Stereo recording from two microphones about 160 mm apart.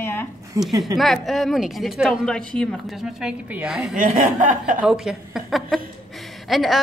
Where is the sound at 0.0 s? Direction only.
15° left (ahead or behind).